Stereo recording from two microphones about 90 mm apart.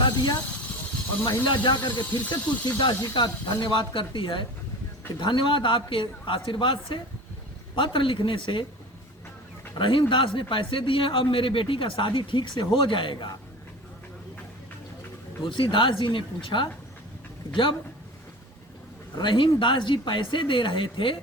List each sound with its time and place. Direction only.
0.0 s a sound: 55° left (ahead or behind)
1.6 s a man's voice: 55° left (ahead or behind); by 8.6 s 70° left (ahead or behind)
9.7 s a man's voice: 70° left (ahead or behind)
15.4 s a man's voice: 65° left (ahead or behind)
19.1 s speech: 65° left (ahead or behind)